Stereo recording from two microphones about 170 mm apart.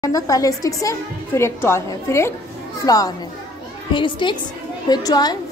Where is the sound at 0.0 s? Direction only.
20° left (ahead or behind).